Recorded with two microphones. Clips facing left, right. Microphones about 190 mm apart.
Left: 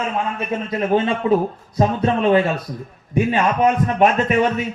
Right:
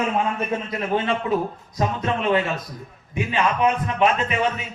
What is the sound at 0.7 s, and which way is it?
A man's voice, 30° left (ahead or behind).